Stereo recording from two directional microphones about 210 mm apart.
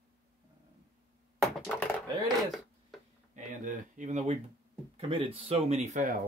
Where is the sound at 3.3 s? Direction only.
35° right (ahead or behind).